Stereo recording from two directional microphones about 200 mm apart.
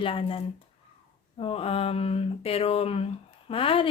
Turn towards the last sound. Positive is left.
turn(degrees=25)  # may be behind; listen again after turning